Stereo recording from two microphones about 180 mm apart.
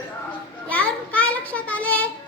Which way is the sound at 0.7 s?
10° left (ahead or behind).